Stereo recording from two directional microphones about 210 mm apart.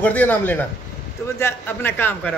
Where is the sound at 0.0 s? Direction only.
10° left (ahead or behind).